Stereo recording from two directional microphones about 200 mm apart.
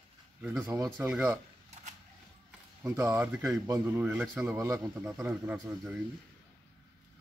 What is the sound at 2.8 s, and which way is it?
Speech, 15° right (ahead or behind).